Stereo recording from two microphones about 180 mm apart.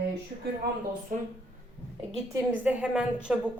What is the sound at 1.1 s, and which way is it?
Speech, 45° right (ahead or behind).